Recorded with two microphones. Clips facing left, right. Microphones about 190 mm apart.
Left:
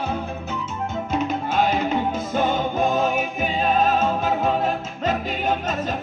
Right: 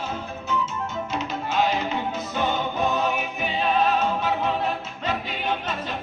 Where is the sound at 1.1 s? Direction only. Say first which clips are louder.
Left 8 dB; 50° left (ahead or behind).